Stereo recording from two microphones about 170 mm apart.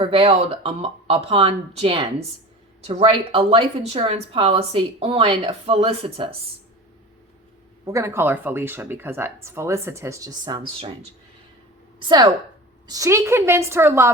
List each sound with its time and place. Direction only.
0.0 s speech: 35° right (ahead or behind)
7.9 s speech: 15° right (ahead or behind)
12.0 s a woman's voice: 25° right (ahead or behind)